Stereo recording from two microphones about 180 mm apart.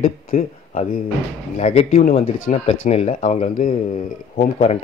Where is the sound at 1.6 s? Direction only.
40° left (ahead or behind).